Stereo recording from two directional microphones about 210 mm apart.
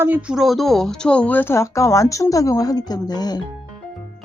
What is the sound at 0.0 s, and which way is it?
Speech, 5° right (ahead or behind).